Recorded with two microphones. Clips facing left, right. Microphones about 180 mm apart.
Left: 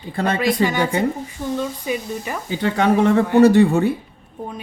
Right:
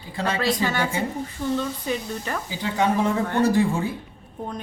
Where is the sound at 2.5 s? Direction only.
65° left (ahead or behind).